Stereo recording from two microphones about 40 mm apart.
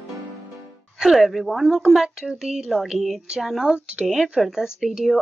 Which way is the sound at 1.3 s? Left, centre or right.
Centre.